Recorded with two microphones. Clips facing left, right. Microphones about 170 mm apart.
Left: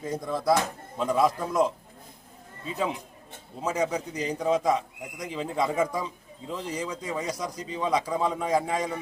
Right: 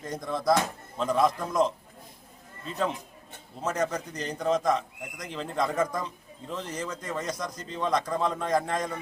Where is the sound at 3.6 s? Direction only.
10° left (ahead or behind).